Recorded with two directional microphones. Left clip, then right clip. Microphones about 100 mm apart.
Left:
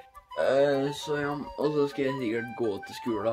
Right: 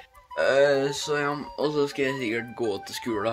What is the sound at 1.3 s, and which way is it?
Speech, 15° right (ahead or behind).